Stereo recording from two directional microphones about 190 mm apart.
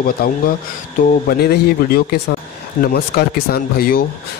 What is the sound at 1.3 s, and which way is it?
Speech, 55° left (ahead or behind).